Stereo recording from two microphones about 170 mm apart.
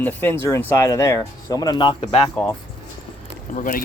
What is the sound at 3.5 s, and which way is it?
Speech, 55° left (ahead or behind).